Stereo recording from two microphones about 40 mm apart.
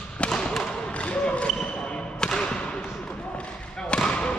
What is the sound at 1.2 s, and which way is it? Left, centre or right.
Basketball bounce, left.